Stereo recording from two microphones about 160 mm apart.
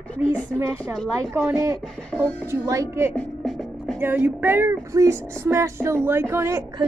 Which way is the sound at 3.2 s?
Centre (ahead or behind).